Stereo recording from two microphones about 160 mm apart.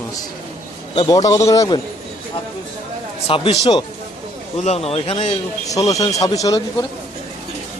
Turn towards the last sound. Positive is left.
turn(degrees=20)  # may be behind; listen again after turning